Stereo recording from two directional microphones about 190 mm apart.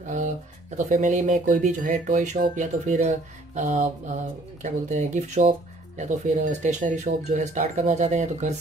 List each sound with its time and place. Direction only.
0.1 s speech: 40° right (ahead or behind)